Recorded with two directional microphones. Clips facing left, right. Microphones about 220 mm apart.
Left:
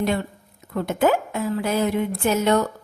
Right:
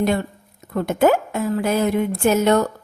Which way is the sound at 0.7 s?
45° right (ahead or behind).